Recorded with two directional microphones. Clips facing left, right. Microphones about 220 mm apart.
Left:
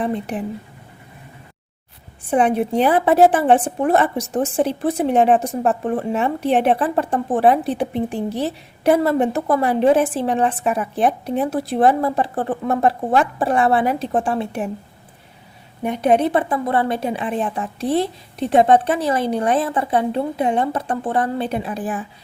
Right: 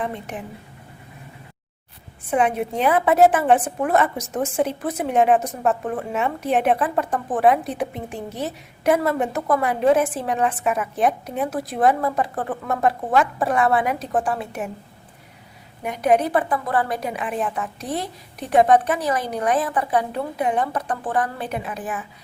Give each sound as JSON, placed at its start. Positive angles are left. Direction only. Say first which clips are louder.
{"t": 0.0, "sound": "a woman's voice", "louder": "left 6 dB", "side_deg": 35}
{"t": 2.3, "sound": "a woman's voice", "louder": "left 4 dB", "side_deg": 35}
{"t": 15.8, "sound": "a woman's voice", "louder": "left 3 dB", "side_deg": 25}